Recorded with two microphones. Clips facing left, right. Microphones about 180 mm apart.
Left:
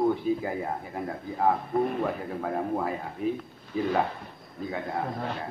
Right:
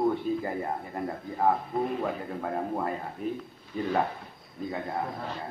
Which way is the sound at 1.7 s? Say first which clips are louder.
Left 3 dB; 55° left (ahead or behind).